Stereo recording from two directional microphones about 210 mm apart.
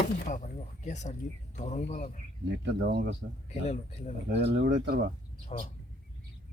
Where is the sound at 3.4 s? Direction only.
30° left (ahead or behind).